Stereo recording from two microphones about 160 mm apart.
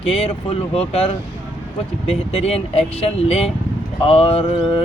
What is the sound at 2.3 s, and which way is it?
Speech, 40° left (ahead or behind).